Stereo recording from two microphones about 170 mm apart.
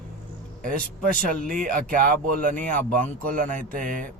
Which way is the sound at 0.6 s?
55° right (ahead or behind).